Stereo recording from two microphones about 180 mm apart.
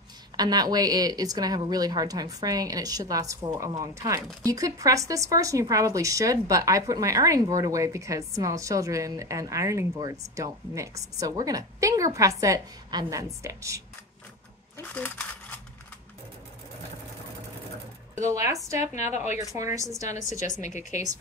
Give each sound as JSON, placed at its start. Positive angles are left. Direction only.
{"t": 0.4, "sound": "a woman's voice", "side_deg": -20}
{"t": 14.8, "sound": "speech", "side_deg": 10}
{"t": 18.2, "sound": "speech", "side_deg": -15}
{"t": 18.9, "sound": "speech", "side_deg": 40}
{"t": 19.5, "sound": "speech", "side_deg": -15}
{"t": 20.1, "sound": "a woman's voice", "side_deg": 40}